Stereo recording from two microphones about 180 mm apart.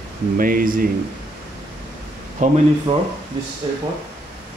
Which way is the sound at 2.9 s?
25° right (ahead or behind).